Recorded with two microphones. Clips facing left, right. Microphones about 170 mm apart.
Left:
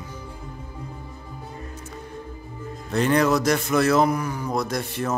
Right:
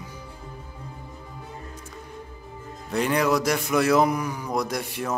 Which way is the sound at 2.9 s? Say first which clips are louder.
Left 2 dB; 10° right (ahead or behind).